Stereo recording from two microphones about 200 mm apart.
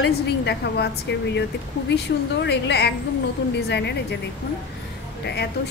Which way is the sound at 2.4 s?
55° left (ahead or behind).